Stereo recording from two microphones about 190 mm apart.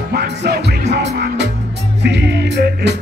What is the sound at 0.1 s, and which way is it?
Music, 60° right (ahead or behind).